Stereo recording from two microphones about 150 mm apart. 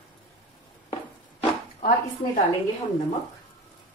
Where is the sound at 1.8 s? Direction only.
70° left (ahead or behind).